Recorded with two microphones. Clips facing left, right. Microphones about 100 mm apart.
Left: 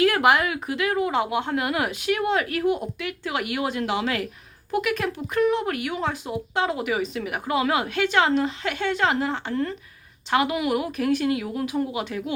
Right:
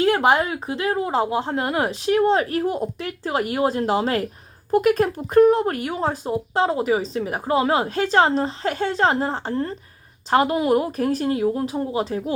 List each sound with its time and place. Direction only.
0.0 s speech: 30° right (ahead or behind)